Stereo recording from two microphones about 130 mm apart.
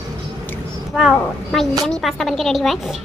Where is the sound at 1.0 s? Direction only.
Centre (ahead or behind).